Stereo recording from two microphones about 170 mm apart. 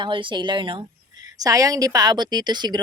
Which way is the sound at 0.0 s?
30° right (ahead or behind).